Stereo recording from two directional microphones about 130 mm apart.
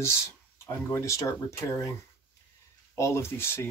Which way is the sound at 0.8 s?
25° left (ahead or behind).